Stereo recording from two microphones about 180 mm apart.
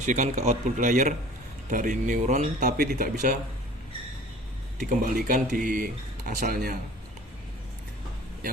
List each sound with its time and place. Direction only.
0.0 s speech: 45° right (ahead or behind)
4.8 s speech: 45° right (ahead or behind)